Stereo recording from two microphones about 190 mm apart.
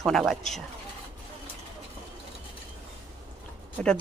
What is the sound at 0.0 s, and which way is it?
Speech, centre (ahead or behind).